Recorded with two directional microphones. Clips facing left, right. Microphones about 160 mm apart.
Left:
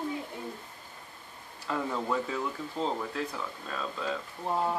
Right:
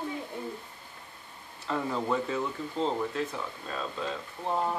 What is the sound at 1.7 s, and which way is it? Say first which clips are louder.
Speech: right 1 dB; centre (ahead or behind).